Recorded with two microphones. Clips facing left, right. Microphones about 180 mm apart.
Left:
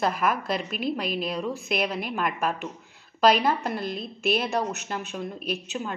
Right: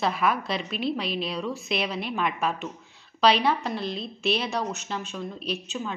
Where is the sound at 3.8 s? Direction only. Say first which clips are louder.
Even; 50° left (ahead or behind).